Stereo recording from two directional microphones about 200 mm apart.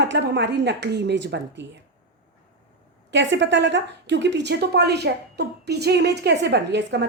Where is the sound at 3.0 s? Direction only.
60° right (ahead or behind).